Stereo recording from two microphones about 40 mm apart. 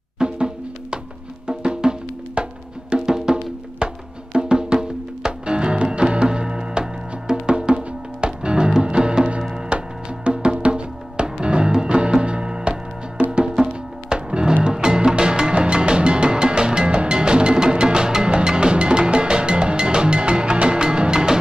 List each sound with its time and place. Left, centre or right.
0.2 s music: right
2.4 s music: right
2.9 s music: centre